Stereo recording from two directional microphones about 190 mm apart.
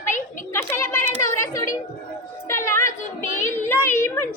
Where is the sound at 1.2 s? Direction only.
15° left (ahead or behind).